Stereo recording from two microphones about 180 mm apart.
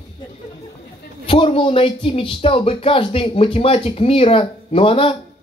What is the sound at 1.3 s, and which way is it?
Speech, 30° left (ahead or behind).